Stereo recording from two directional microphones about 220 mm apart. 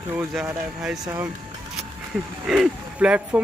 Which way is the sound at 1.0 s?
15° right (ahead or behind).